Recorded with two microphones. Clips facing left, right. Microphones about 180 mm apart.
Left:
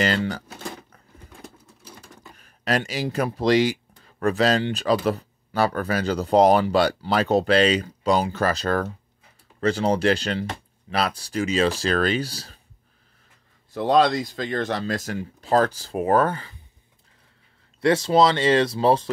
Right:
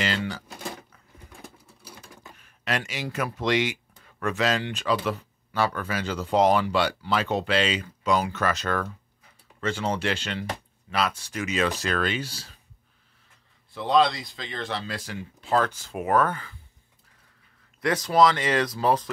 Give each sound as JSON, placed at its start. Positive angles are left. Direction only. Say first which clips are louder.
{"t": 2.3, "sound": "a sound", "louder": "left 5 dB", "side_deg": 40}
{"t": 3.3, "sound": "speech", "louder": "left 6 dB", "side_deg": 35}
{"t": 13.7, "sound": "speech", "louder": "left 3 dB", "side_deg": 50}
{"t": 17.7, "sound": "speech", "louder": "left 3 dB", "side_deg": 30}